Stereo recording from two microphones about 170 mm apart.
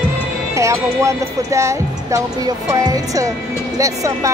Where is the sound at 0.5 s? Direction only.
15° right (ahead or behind).